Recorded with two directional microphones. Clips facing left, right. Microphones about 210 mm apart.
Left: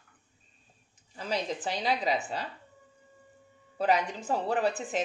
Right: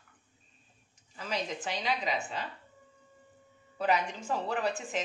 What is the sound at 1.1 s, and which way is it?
A woman's voice, 35° left (ahead or behind).